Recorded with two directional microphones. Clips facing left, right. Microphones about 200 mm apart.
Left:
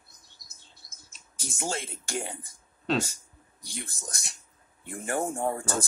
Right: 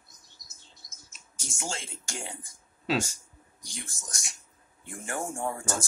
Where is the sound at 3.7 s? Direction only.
60° left (ahead or behind).